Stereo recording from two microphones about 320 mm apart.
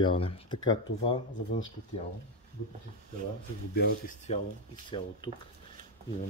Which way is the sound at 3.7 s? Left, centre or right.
Left.